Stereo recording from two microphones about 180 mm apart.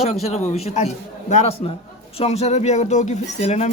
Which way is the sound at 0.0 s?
35° left (ahead or behind).